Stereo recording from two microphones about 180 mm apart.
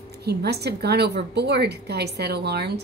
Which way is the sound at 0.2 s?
65° right (ahead or behind).